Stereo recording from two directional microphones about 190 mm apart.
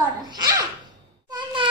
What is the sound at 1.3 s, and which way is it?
Insect, 25° right (ahead or behind).